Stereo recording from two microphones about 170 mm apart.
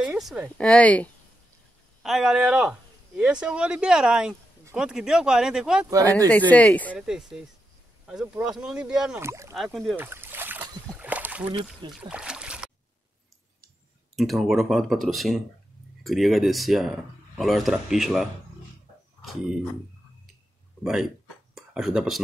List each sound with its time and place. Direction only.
0.0 s speech: centre (ahead or behind)
5.9 s speech: 20° right (ahead or behind)
6.5 s speech: 10° left (ahead or behind)
7.0 s speech: 5° right (ahead or behind)
9.2 s speech: 15° right (ahead or behind)
9.6 s speech: centre (ahead or behind)
9.9 s speech: 10° right (ahead or behind)
11.0 s rowboat: 10° right (ahead or behind)
11.9 s speech: 5° right (ahead or behind)
14.1 s speech: centre (ahead or behind)
20.8 s speech: 5° right (ahead or behind)